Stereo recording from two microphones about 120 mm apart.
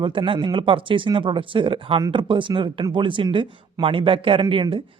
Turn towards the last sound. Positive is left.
turn(degrees=-45)  # may be behind; listen again after turning